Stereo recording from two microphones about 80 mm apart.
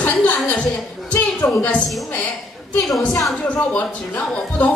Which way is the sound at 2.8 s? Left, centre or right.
Centre.